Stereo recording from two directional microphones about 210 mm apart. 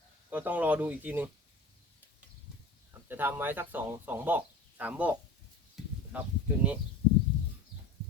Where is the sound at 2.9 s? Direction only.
10° right (ahead or behind).